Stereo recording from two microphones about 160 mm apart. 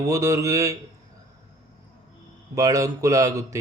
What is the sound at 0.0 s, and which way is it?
Speech, 20° right (ahead or behind).